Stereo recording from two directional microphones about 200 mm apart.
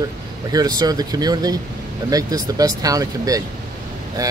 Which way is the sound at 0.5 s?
20° right (ahead or behind).